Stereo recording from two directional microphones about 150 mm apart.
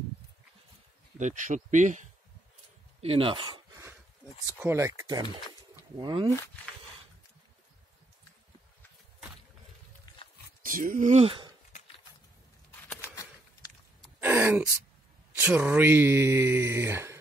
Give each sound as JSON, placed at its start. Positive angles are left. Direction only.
{"t": 1.1, "sound": "speech", "side_deg": -55}
{"t": 3.0, "sound": "speech", "side_deg": -40}
{"t": 4.6, "sound": "speech", "side_deg": -15}
{"t": 6.3, "sound": "speech", "side_deg": 15}
{"t": 10.6, "sound": "speech", "side_deg": -65}
{"t": 12.8, "sound": "a sound", "side_deg": 15}
{"t": 14.2, "sound": "speech", "side_deg": -15}